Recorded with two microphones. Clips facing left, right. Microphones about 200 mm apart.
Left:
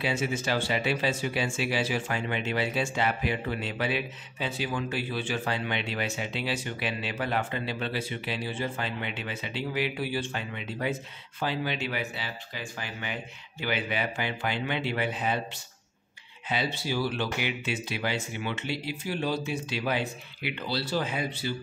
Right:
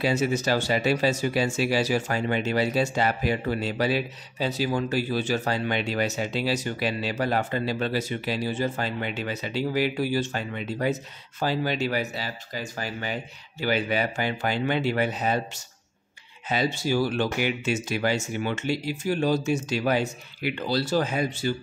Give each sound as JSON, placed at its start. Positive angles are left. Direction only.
{"t": 0.0, "sound": "speech", "side_deg": -40}